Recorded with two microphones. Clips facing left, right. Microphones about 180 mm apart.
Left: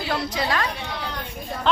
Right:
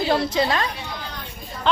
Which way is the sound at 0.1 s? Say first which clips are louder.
Right 3 dB; 25° right (ahead or behind).